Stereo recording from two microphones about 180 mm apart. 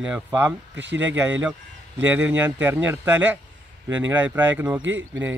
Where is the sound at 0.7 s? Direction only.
85° right.